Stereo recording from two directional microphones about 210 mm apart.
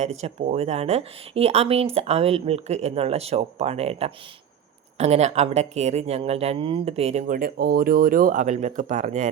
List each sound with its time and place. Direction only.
0.0 s speech: 30° right (ahead or behind)